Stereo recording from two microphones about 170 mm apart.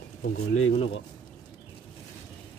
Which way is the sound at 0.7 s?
35° left (ahead or behind).